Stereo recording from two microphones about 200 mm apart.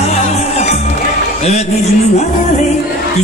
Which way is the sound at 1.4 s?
35° left (ahead or behind).